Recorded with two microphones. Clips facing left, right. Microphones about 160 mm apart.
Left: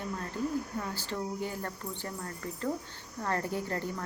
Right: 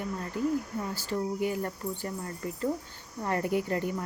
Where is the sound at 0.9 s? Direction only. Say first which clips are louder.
Right 4 dB; 15° right (ahead or behind).